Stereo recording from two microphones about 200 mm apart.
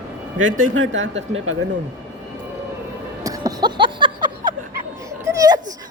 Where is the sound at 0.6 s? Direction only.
80° right.